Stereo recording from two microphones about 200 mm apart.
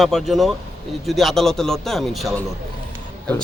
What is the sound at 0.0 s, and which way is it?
Speech, centre (ahead or behind).